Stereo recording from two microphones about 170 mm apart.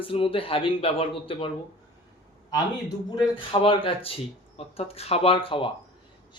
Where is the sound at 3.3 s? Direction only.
30° left (ahead or behind).